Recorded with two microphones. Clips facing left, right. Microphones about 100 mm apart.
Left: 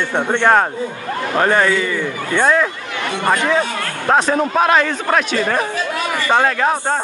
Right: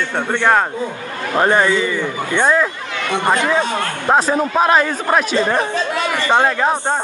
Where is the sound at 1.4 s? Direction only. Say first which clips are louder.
Right 1 dB; 15° right (ahead or behind).